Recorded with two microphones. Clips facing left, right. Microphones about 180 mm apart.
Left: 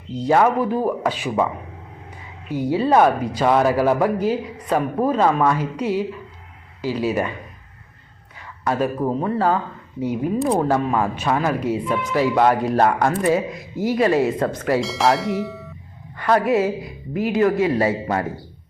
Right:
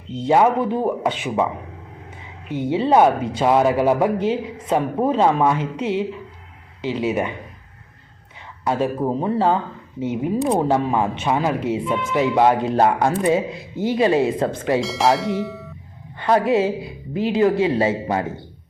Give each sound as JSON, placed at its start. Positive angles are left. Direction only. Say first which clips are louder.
{"t": 0.1, "sound": "speech", "louder": "right 1 dB", "side_deg": -20}
{"t": 2.5, "sound": "speech", "louder": "even", "side_deg": -25}
{"t": 8.4, "sound": "speech", "louder": "even", "side_deg": -25}
{"t": 14.8, "sound": "speech", "louder": "right 1 dB", "side_deg": 0}
{"t": 16.1, "sound": "speech", "louder": "even", "side_deg": -25}